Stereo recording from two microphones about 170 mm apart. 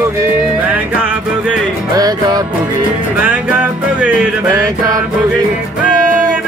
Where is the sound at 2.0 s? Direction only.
20° right (ahead or behind).